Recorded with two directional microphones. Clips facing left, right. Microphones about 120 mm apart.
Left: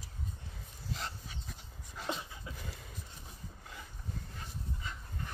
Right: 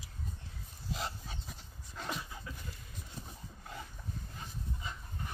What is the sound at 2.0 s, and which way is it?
Dog, 25° left (ahead or behind).